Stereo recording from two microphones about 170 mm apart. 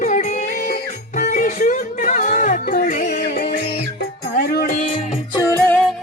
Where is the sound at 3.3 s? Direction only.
80° left.